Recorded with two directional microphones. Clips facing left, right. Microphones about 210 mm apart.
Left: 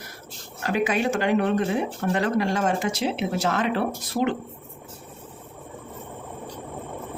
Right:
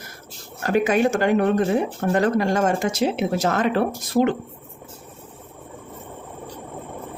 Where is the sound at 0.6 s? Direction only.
45° right (ahead or behind).